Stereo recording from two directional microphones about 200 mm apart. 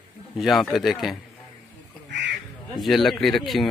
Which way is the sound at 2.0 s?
60° right (ahead or behind).